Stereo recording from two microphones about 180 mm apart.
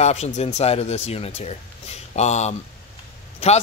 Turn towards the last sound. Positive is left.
turn(degrees=35)  # may be behind; listen again after turning